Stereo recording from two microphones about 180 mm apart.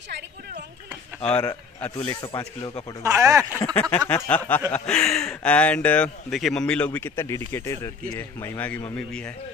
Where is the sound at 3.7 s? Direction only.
5° left (ahead or behind).